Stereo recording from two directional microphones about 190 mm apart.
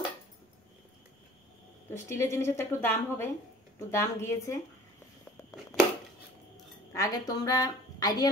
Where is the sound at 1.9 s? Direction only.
15° left (ahead or behind).